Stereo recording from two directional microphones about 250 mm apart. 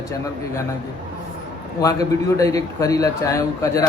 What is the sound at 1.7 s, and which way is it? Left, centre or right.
A man's voice, centre.